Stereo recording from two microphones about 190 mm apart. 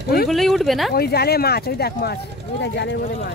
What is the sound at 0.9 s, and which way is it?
Speech, 55° left (ahead or behind).